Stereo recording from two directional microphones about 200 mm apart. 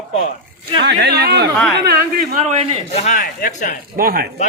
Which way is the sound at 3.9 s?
45° right (ahead or behind).